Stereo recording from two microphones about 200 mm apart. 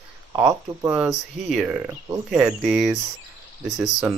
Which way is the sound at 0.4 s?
10° right (ahead or behind).